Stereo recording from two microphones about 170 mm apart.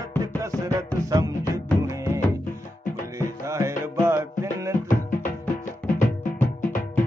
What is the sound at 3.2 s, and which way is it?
Music, 15° right (ahead or behind).